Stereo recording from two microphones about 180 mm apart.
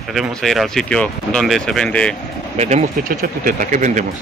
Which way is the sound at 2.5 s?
40° right (ahead or behind).